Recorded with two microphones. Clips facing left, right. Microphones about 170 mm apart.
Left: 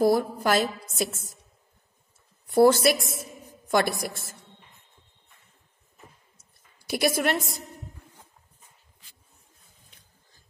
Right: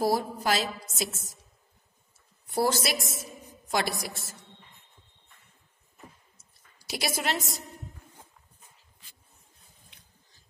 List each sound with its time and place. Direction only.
0.0 s a woman's voice: 55° left (ahead or behind)
2.4 s a woman's voice: 55° left (ahead or behind)
6.8 s a woman's voice: 55° left (ahead or behind)